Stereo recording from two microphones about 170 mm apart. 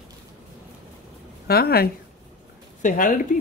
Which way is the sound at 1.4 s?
65° left (ahead or behind).